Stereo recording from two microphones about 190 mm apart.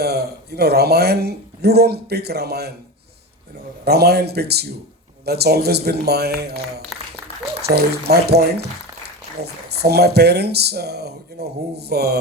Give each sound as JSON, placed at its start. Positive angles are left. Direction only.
{"t": 0.0, "sound": "speech", "side_deg": -55}
{"t": 3.8, "sound": "speech", "side_deg": -55}
{"t": 6.9, "sound": "applause", "side_deg": 0}
{"t": 7.8, "sound": "speech", "side_deg": -60}